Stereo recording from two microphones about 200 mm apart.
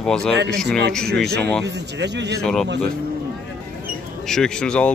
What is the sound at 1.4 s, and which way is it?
Speech, 5° left (ahead or behind).